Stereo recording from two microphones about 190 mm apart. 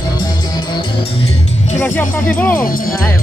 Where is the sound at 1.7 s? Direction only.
10° left (ahead or behind).